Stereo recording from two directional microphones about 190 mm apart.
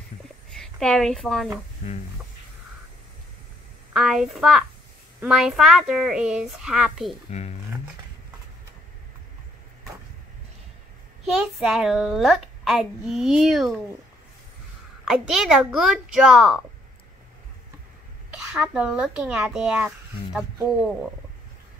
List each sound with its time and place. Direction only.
0.5 s a woman's voice: centre (ahead or behind)
3.9 s a child's voice: centre (ahead or behind)
7.2 s speech: 35° left (ahead or behind)
11.2 s a child's voice: centre (ahead or behind)
15.0 s a child's voice: 5° right (ahead or behind)
18.5 s a child's voice: 5° right (ahead or behind)